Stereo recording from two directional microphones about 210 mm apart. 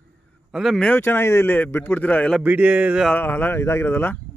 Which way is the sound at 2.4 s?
5° right (ahead or behind).